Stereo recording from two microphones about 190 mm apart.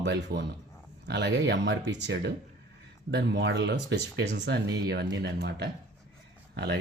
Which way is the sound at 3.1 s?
65° right (ahead or behind).